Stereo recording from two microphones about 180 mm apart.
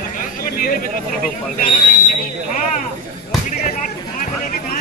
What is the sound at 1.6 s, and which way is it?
Speech, 45° left (ahead or behind).